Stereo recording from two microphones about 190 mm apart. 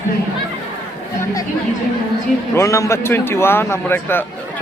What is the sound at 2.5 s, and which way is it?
A man's voice, 15° left (ahead or behind).